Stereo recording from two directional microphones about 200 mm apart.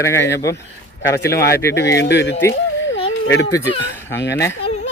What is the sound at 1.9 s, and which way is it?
Speech, 60° left (ahead or behind).